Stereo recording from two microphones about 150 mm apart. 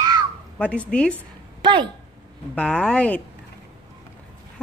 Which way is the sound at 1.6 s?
30° right (ahead or behind).